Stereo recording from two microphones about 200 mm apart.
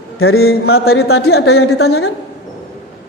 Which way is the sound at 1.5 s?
90° left.